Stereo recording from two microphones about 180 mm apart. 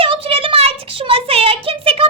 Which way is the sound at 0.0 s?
30° right (ahead or behind).